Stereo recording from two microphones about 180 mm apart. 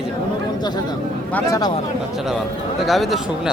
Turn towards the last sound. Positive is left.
turn(degrees=0)  # may be behind; listen again after turning